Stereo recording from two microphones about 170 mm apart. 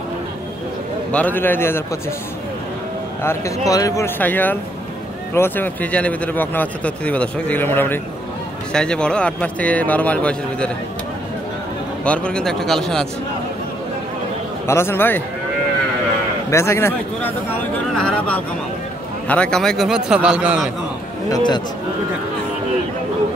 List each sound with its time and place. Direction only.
1.1 s speech: 10° left (ahead or behind)
3.2 s speech: 15° left (ahead or behind)
12.0 s a man's voice: 5° left (ahead or behind)
14.7 s speech: 15° left (ahead or behind)
16.4 s a man's voice: 15° left (ahead or behind); by 20.7 s 5° right (ahead or behind)